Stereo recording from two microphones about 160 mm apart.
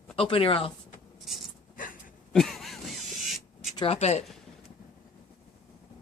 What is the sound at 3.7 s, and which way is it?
Speech, 35° left (ahead or behind).